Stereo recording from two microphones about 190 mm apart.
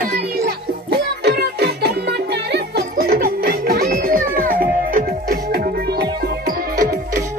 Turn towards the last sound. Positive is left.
turn(degrees=-50)  # may be behind; listen again after turning